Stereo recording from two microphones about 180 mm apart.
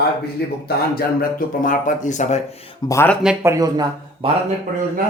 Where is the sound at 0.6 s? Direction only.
55° left (ahead or behind); by 2.4 s 40° left (ahead or behind).